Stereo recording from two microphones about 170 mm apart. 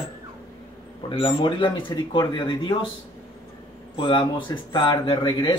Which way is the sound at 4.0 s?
30° left (ahead or behind).